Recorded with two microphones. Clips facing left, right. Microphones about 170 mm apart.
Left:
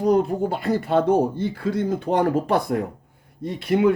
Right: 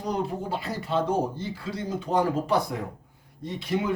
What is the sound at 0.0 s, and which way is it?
Speech, 50° left (ahead or behind).